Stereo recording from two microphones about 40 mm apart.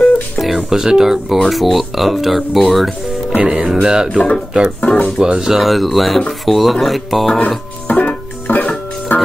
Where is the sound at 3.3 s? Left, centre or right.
Right.